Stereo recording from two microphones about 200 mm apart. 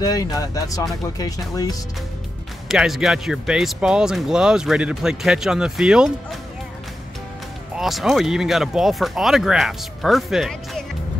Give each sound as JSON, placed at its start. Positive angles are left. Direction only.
{"t": 0.0, "sound": "speech", "side_deg": 20}
{"t": 2.7, "sound": "speech", "side_deg": 0}
{"t": 7.7, "sound": "speech", "side_deg": 0}